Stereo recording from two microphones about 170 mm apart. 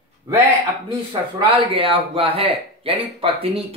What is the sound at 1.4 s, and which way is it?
Speech, 30° right (ahead or behind).